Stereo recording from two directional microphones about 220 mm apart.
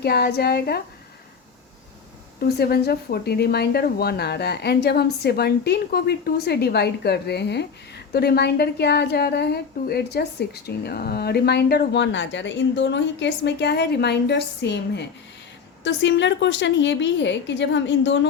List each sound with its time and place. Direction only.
0.0 s a woman's voice: 45° left (ahead or behind)
2.6 s a woman's voice: 45° left (ahead or behind)